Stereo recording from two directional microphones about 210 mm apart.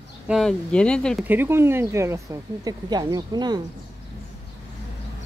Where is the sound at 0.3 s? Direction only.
Centre (ahead or behind).